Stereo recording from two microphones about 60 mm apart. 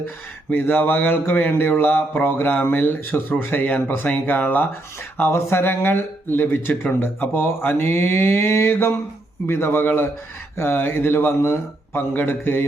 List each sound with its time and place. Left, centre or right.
0.5 s speech: left
5.3 s speech: left